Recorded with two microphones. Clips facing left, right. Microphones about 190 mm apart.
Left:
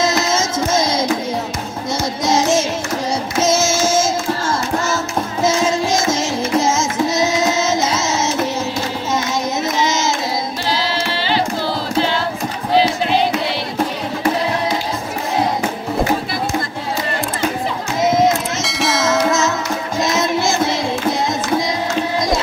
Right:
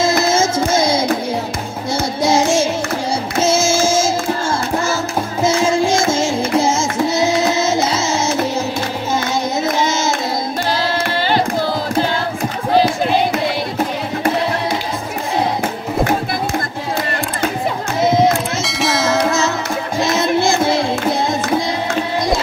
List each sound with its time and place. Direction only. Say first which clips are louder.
0.3 s music: right 3 dB; 30° right (ahead or behind)
2.2 s music: right 1 dB; 30° right (ahead or behind)
3.4 s child singing: right 2 dB; 30° right (ahead or behind)
5.9 s music: right 2 dB; 30° right (ahead or behind)
10.7 s music: right 1 dB; 50° right (ahead or behind)
18.6 s bell: right 1 dB; centre (ahead or behind)